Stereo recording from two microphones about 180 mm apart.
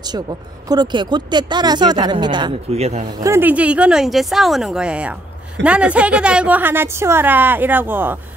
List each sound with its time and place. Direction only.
0.0 s speech: 20° right (ahead or behind)
2.7 s speech: 35° right (ahead or behind)
3.2 s a woman's voice: 15° right (ahead or behind)